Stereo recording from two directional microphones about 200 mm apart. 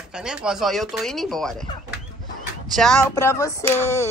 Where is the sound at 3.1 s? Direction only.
15° left (ahead or behind).